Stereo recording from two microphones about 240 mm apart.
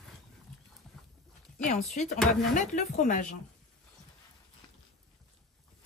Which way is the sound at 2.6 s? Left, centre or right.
Left.